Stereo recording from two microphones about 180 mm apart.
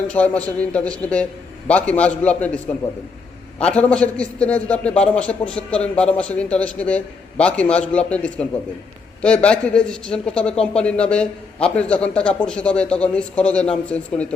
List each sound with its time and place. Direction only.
0.1 s a man's voice: 5° left (ahead or behind)